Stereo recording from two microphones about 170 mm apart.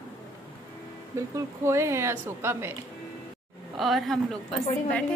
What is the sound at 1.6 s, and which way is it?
A woman's voice, 15° right (ahead or behind).